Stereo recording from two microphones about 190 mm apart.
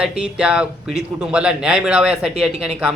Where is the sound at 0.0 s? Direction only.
5° right (ahead or behind).